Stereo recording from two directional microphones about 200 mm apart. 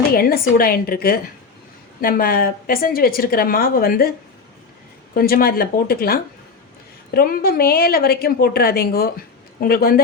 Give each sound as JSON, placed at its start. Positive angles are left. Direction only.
{"t": 0.1, "sound": "a woman's voice", "side_deg": 50}
{"t": 5.1, "sound": "a woman's voice", "side_deg": 50}